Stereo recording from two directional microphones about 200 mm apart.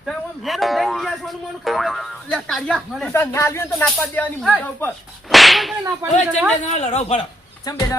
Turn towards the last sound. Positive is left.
turn(degrees=20)  # may be behind; listen again after turning